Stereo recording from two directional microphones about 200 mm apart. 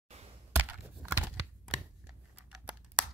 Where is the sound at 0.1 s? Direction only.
35° right (ahead or behind).